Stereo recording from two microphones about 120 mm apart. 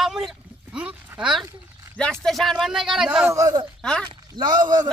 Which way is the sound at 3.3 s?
30° right (ahead or behind).